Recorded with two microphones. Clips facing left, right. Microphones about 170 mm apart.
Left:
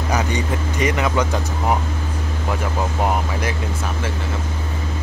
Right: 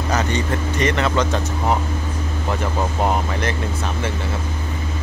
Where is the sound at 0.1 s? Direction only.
10° left (ahead or behind).